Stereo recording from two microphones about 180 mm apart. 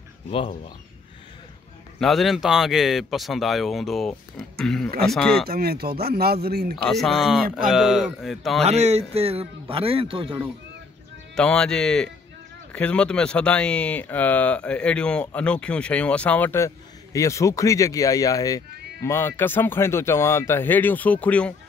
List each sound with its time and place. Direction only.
0.3 s speech: 30° left (ahead or behind)
2.0 s speech: centre (ahead or behind)
5.5 s speech: 60° right (ahead or behind)
6.9 s speech: centre (ahead or behind)
8.6 s a man's voice: 35° right (ahead or behind)
11.3 s speech: 5° left (ahead or behind)